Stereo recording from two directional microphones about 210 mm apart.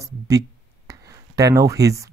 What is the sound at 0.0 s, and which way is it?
Speech, 15° right (ahead or behind).